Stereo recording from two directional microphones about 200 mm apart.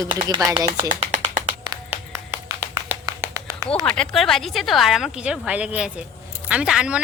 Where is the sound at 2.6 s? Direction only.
15° right (ahead or behind).